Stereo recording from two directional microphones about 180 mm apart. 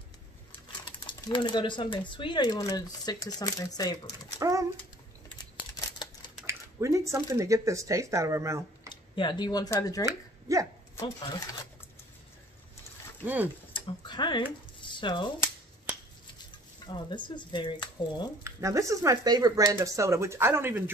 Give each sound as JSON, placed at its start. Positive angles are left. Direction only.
{"t": 1.0, "sound": "speech", "side_deg": 25}
{"t": 4.4, "sound": "speech", "side_deg": -20}
{"t": 5.6, "sound": "a sound", "side_deg": 25}
{"t": 6.4, "sound": "speech", "side_deg": -15}
{"t": 8.8, "sound": "speech", "side_deg": 25}
{"t": 10.0, "sound": "speech", "side_deg": -20}
{"t": 11.0, "sound": "speech", "side_deg": 20}
{"t": 13.2, "sound": "speech", "side_deg": -10}
{"t": 13.7, "sound": "speech", "side_deg": 25}
{"t": 16.8, "sound": "speech", "side_deg": 25}
{"t": 18.4, "sound": "speech", "side_deg": -15}